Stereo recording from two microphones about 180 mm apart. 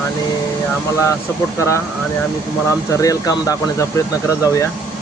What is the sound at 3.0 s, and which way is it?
Speech, 20° left (ahead or behind).